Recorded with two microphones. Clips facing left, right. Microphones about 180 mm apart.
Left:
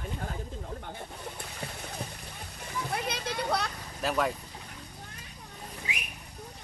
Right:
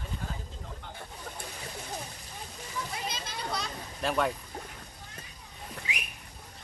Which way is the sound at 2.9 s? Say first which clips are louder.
Left 5 dB; 60° left (ahead or behind).